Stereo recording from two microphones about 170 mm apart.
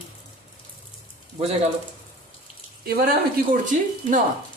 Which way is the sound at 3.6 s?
50° right (ahead or behind).